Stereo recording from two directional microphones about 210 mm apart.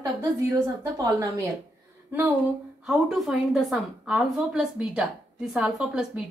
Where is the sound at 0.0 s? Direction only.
20° right (ahead or behind).